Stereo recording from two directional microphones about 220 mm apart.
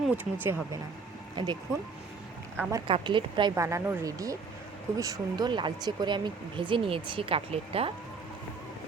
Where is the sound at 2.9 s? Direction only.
20° right (ahead or behind).